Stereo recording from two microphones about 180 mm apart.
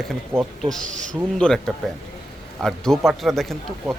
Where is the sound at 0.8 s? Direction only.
45° right (ahead or behind).